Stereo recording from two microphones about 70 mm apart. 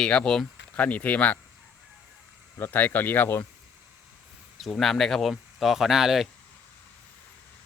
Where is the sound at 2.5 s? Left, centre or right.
Left.